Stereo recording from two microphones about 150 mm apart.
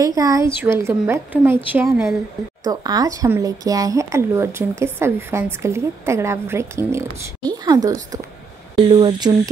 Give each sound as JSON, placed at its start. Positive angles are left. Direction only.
{"t": 0.0, "sound": "a woman's voice", "side_deg": -25}
{"t": 2.6, "sound": "speech", "side_deg": -25}